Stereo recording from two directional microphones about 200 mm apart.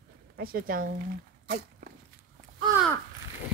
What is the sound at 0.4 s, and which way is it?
Speech, 45° right (ahead or behind).